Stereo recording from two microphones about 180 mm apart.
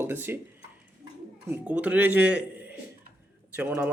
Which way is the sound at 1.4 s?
5° right (ahead or behind).